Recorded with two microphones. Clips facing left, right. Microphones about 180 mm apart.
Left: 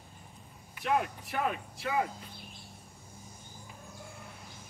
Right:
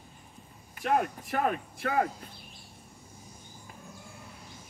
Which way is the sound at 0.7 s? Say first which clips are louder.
Right 3 dB; 45° right (ahead or behind).